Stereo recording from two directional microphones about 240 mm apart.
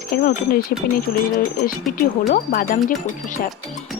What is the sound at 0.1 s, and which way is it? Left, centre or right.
Speech, left.